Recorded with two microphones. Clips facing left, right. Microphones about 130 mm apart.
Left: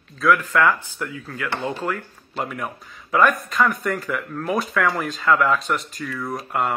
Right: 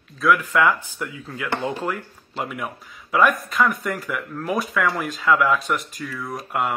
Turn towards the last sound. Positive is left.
turn(degrees=0)  # may be behind; listen again after turning